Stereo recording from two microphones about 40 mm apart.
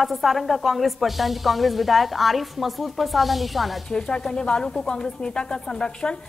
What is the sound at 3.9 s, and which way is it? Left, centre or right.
A woman's voice, left.